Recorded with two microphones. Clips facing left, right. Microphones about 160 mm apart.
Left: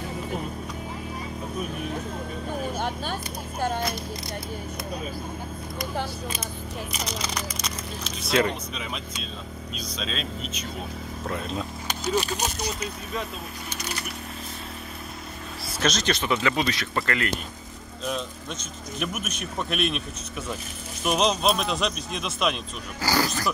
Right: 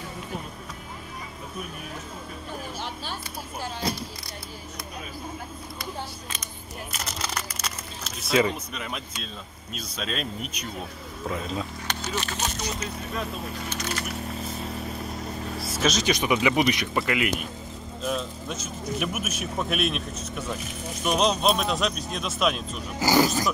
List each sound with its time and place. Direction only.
7.6 s speech: 5° right (ahead or behind)
12.0 s speech: 10° left (ahead or behind)
15.8 s speech: 10° right (ahead or behind)
22.9 s speech: 15° right (ahead or behind)